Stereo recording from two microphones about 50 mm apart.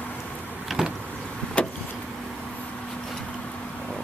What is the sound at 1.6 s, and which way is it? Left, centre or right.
Vehicle, left.